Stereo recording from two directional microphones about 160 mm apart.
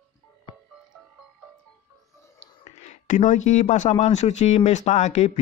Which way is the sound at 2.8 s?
50° left (ahead or behind).